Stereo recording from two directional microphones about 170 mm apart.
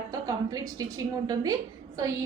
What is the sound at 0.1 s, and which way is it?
A woman's voice, 20° right (ahead or behind).